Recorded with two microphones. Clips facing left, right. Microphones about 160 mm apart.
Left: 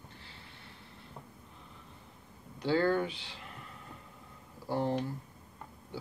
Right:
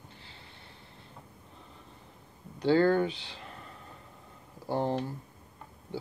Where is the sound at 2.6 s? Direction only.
25° right (ahead or behind).